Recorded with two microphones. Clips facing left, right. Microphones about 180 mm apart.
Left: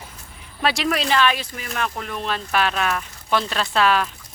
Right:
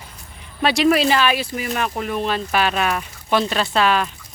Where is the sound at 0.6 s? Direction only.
Centre (ahead or behind).